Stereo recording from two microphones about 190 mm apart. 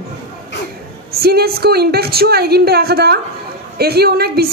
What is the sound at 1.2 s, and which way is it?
Speech, 55° right (ahead or behind).